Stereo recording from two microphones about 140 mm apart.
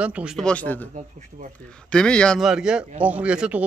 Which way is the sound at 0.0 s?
10° right (ahead or behind).